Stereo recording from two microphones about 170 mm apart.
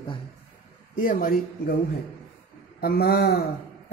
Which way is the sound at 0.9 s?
55° left (ahead or behind).